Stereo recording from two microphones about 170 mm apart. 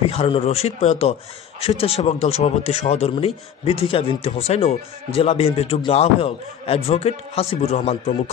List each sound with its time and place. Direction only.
0.0 s speech: 35° left (ahead or behind)